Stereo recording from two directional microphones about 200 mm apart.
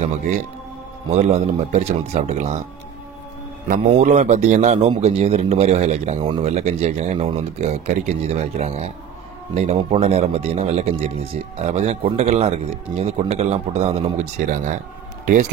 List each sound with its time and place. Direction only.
0.0 s speech: 35° right (ahead or behind)
3.6 s speech: 40° right (ahead or behind)